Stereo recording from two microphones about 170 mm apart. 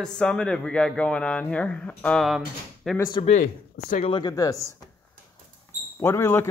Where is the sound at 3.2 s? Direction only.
45° left (ahead or behind).